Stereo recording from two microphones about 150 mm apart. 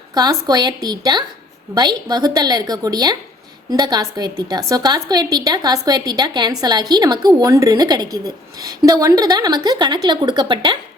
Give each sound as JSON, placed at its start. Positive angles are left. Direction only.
{"t": 0.1, "sound": "a woman's voice", "side_deg": -25}